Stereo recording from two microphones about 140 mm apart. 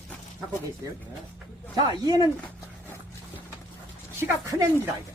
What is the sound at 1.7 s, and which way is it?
Speech, 25° right (ahead or behind).